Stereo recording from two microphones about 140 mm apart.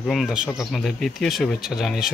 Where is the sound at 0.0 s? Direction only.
Centre (ahead or behind).